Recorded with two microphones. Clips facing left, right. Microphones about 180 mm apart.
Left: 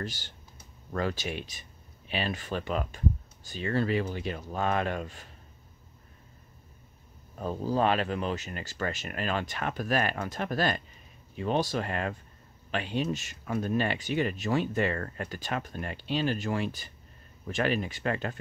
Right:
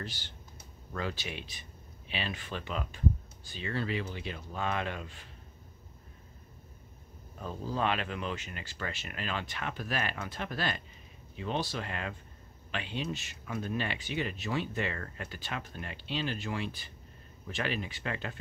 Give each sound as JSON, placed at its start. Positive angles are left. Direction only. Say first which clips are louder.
{"t": 0.0, "sound": "speech", "louder": "left 5 dB", "side_deg": 45}
{"t": 7.3, "sound": "speech", "louder": "left 6 dB", "side_deg": 40}